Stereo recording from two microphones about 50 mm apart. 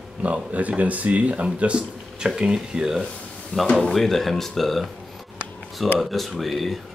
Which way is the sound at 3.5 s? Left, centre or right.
Centre.